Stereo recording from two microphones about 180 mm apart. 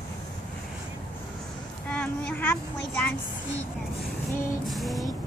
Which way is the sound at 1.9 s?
5° left (ahead or behind).